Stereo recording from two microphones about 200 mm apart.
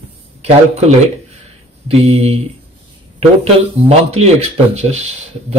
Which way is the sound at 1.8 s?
30° right (ahead or behind).